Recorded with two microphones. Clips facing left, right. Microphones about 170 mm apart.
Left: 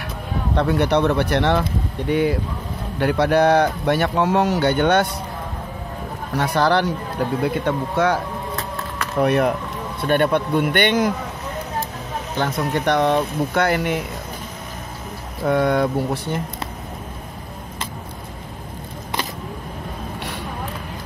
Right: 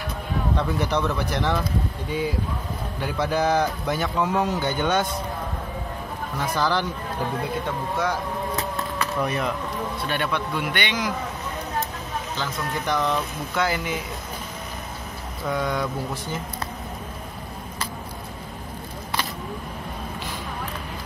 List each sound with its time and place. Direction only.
0.6 s speech: 65° left (ahead or behind)
6.3 s speech: 70° left (ahead or behind); by 11.1 s 55° left (ahead or behind)
12.4 s speech: 65° left (ahead or behind)
15.4 s speech: 60° left (ahead or behind)